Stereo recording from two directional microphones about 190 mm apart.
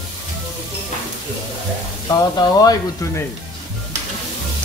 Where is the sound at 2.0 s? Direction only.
20° left (ahead or behind).